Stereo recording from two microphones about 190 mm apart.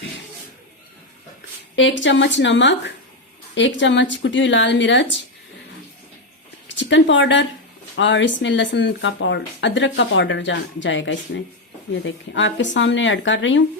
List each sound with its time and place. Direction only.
1.7 s speech: 75° left (ahead or behind)
6.7 s speech: 70° left (ahead or behind)